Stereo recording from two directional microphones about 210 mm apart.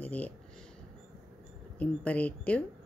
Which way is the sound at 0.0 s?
5° left (ahead or behind).